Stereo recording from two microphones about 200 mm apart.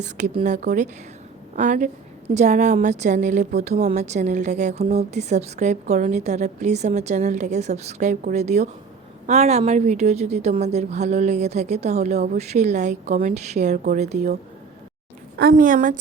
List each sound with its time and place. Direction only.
0.0 s a woman's voice: 35° right (ahead or behind)
15.4 s a woman's voice: 45° right (ahead or behind)